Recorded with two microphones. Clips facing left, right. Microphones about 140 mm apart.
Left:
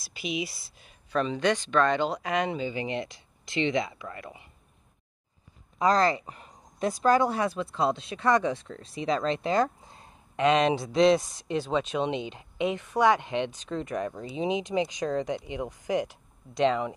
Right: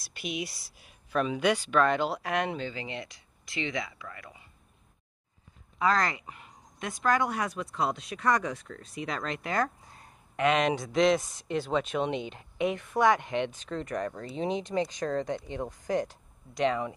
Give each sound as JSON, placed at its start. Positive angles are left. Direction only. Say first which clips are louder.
{"t": 0.0, "sound": "speech", "louder": "left 3 dB", "side_deg": 0}
{"t": 2.6, "sound": "speech", "louder": "left 6 dB", "side_deg": 20}
{"t": 5.8, "sound": "speech", "louder": "left 4 dB", "side_deg": 35}